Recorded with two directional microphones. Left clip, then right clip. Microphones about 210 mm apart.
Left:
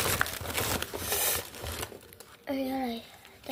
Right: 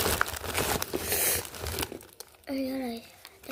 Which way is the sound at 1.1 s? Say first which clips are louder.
Even; 10° right (ahead or behind).